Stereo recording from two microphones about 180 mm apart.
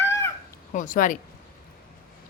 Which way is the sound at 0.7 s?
45° left (ahead or behind).